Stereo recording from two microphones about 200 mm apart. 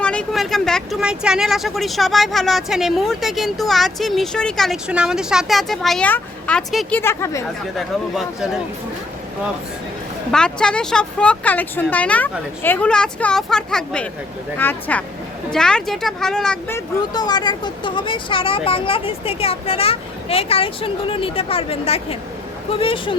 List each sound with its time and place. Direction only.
0.0 s speech: 5° left (ahead or behind)
7.0 s speech: 15° left (ahead or behind)
7.8 s speech: centre (ahead or behind)
10.3 s speech: 5° left (ahead or behind); by 23.1 s 25° left (ahead or behind)